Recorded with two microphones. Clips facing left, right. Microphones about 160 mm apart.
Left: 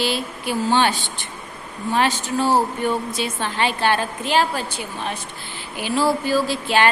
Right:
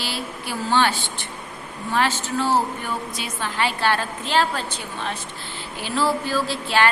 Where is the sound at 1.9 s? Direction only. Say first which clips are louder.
Left 2 dB; 15° left (ahead or behind).